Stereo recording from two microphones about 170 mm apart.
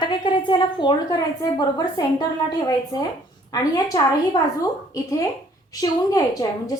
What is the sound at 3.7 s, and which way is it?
A woman's voice, 20° left (ahead or behind).